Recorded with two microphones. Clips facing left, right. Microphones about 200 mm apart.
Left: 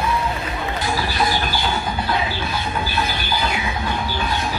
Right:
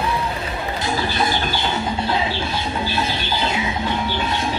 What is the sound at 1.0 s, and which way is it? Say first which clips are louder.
Chicken: even; 25° right (ahead or behind).